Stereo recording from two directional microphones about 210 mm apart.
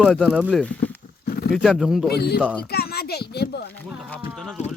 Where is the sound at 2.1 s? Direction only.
50° left (ahead or behind).